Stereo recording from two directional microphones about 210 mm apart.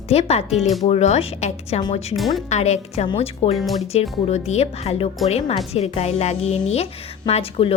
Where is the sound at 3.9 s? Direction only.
30° left (ahead or behind).